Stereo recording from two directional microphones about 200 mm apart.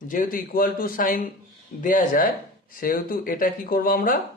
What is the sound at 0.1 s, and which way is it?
Speech, 45° left (ahead or behind).